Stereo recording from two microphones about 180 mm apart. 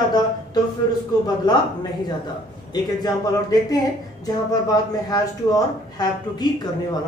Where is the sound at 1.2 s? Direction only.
25° left (ahead or behind).